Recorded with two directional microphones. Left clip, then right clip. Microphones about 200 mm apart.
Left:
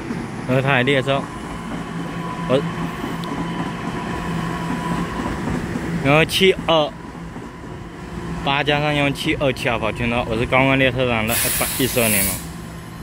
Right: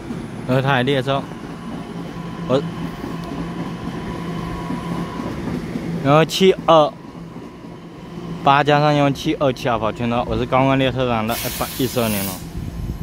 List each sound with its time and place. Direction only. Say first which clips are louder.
0.5 s speech: even; 10° right (ahead or behind)
2.5 s speech: even; 10° right (ahead or behind)
6.0 s speech: right 1 dB; 15° right (ahead or behind)
8.5 s speech: right 5 dB; 20° right (ahead or behind)